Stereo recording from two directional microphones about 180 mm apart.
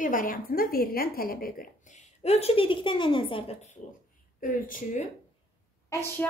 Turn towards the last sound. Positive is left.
turn(degrees=10)  # may be behind; listen again after turning